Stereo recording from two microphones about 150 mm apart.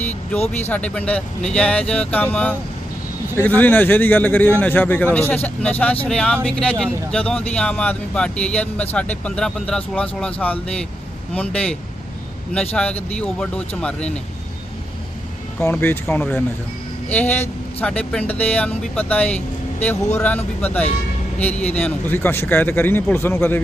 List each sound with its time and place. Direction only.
0.3 s speech: 45° left (ahead or behind)
0.7 s speech: 10° left (ahead or behind)
15.6 s speech: 15° left (ahead or behind)